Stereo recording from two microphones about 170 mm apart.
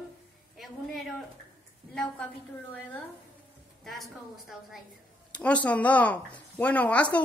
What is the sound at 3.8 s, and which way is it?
Speech, centre (ahead or behind).